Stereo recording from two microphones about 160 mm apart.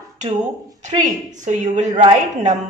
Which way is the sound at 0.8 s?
50° right (ahead or behind).